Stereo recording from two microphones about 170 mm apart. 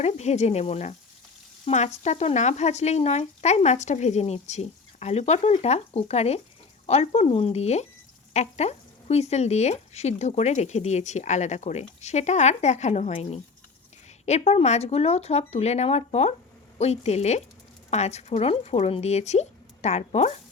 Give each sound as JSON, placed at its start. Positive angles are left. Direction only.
{"t": 0.0, "sound": "speech", "side_deg": 40}